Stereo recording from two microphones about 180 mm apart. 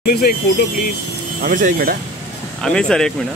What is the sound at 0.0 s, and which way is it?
Speech, 55° left (ahead or behind).